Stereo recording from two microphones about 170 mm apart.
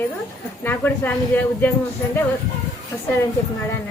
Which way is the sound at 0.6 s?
10° left (ahead or behind).